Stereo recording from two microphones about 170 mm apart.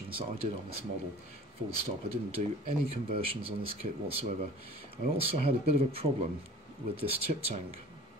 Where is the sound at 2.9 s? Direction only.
35° right (ahead or behind).